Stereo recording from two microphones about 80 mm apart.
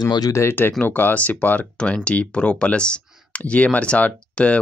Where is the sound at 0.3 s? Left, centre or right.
Left.